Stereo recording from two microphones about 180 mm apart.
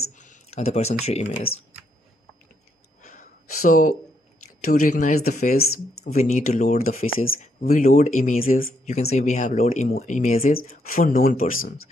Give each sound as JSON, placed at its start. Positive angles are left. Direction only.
{"t": 0.2, "sound": "speech", "side_deg": 40}
{"t": 3.0, "sound": "a sound", "side_deg": 55}
{"t": 4.6, "sound": "speech", "side_deg": 50}